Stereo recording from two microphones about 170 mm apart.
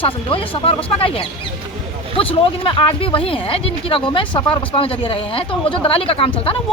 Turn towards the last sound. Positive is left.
turn(degrees=30)  # may be behind; listen again after turning